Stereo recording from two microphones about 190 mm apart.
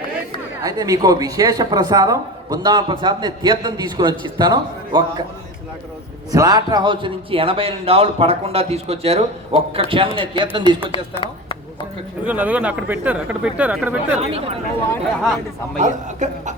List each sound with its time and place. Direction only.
0.6 s a man's voice: 20° right (ahead or behind)
6.3 s a man's voice: 20° right (ahead or behind)
11.2 s a sound: 25° left (ahead or behind)
12.2 s speech: 10° right (ahead or behind)
14.2 s speech: 30° right (ahead or behind)
15.2 s a man's voice: centre (ahead or behind)
15.8 s speech: 40° right (ahead or behind)